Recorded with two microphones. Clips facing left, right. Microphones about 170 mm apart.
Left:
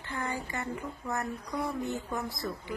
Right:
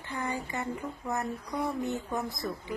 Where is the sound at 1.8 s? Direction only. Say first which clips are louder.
Right 2 dB; 20° right (ahead or behind).